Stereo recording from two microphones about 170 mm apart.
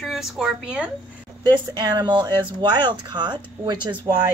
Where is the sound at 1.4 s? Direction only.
25° right (ahead or behind).